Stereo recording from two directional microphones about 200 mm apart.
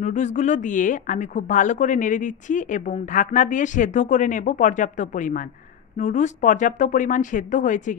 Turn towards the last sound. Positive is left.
turn(degrees=40)  # may be behind; listen again after turning